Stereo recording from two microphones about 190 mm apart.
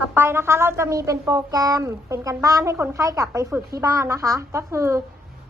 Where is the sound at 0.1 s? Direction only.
10° right (ahead or behind).